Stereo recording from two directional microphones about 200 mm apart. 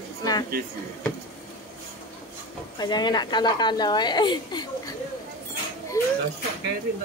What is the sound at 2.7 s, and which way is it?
A woman's voice, 20° left (ahead or behind).